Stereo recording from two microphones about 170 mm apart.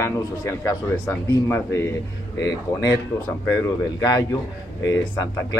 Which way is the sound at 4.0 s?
20° left (ahead or behind).